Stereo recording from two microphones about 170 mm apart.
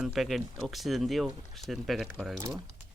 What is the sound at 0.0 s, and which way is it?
Speech, centre (ahead or behind).